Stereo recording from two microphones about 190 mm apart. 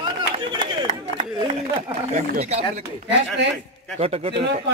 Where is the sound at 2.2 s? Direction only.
40° right (ahead or behind).